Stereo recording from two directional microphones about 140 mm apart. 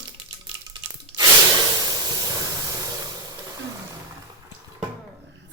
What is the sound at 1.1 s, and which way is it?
Snort, 30° right (ahead or behind).